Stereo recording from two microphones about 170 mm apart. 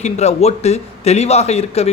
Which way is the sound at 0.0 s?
40° left (ahead or behind).